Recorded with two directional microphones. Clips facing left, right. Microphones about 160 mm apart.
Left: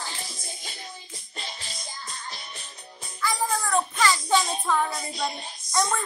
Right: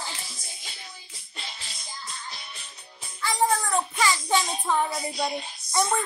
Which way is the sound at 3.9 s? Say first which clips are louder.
Left 1 dB; 15° right (ahead or behind).